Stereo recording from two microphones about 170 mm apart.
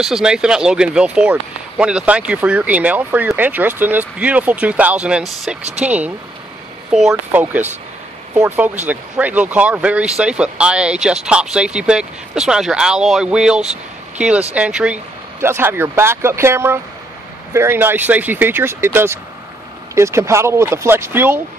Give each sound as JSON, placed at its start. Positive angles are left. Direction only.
{"t": 0.0, "sound": "speech", "side_deg": -5}